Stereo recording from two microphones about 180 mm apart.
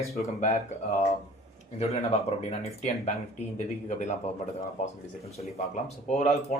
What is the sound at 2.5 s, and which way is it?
Speech, 40° left (ahead or behind).